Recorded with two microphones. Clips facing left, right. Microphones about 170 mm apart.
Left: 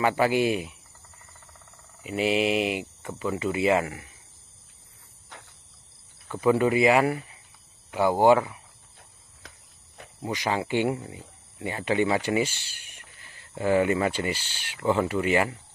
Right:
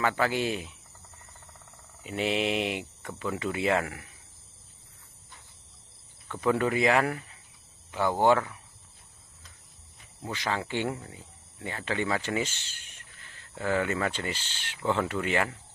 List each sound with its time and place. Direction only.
0.0 s speech: 10° left (ahead or behind)
2.0 s speech: 5° left (ahead or behind)
5.3 s insect: 80° left
6.2 s speech: 10° left (ahead or behind)
10.2 s speech: 15° left (ahead or behind)